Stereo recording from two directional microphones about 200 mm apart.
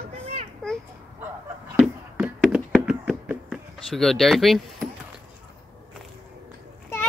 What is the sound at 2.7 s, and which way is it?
Knock, 5° right (ahead or behind).